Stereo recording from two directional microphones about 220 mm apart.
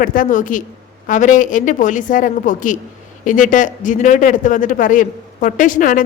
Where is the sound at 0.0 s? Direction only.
40° left (ahead or behind).